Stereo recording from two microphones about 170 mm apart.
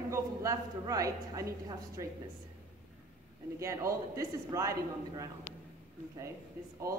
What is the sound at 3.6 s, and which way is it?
A man's voice, 20° right (ahead or behind).